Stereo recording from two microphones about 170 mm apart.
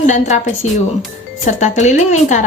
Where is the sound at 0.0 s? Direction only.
45° left (ahead or behind).